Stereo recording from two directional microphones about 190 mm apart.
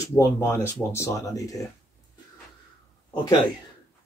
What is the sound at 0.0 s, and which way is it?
Speech, 15° left (ahead or behind).